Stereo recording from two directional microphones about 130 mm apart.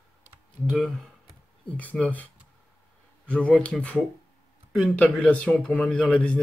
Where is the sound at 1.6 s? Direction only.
10° left (ahead or behind).